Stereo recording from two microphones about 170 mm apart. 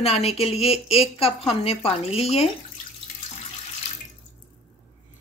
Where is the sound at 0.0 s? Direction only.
35° left (ahead or behind).